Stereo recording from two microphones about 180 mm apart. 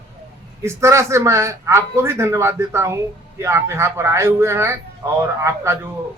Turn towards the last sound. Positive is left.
turn(degrees=-15)  # may be behind; listen again after turning